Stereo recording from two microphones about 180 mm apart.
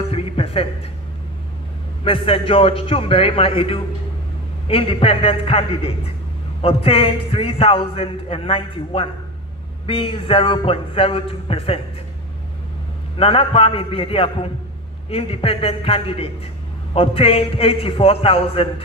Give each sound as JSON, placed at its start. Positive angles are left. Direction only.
{"t": 0.1, "sound": "music", "side_deg": 30}
{"t": 2.0, "sound": "a man's voice", "side_deg": 30}
{"t": 13.1, "sound": "a man's voice", "side_deg": 30}